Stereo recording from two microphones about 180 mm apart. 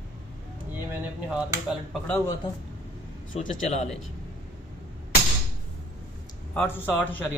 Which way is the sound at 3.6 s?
40° left (ahead or behind).